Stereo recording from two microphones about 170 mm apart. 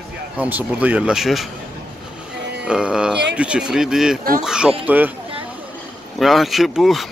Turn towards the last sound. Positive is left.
turn(degrees=0)  # may be behind; listen again after turning